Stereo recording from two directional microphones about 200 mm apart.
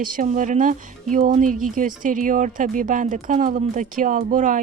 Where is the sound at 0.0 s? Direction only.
40° right (ahead or behind).